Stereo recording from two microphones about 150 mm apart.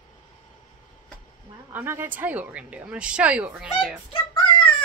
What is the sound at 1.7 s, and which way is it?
Speech, 15° right (ahead or behind).